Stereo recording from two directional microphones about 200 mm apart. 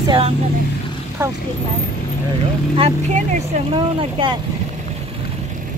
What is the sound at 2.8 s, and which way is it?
Speech, 30° right (ahead or behind).